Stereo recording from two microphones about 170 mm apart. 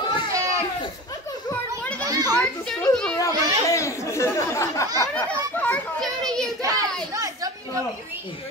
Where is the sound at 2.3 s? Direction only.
5° left (ahead or behind).